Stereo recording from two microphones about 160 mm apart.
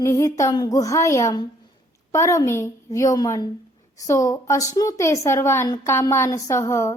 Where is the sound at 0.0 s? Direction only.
20° left (ahead or behind).